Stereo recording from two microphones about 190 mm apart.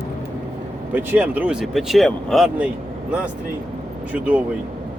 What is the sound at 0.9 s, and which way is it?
Speech, 10° right (ahead or behind).